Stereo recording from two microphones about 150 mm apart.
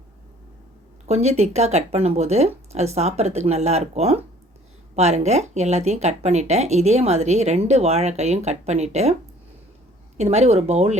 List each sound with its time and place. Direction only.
1.0 s a woman's voice: 45° right (ahead or behind)
10.2 s a woman's voice: 45° right (ahead or behind)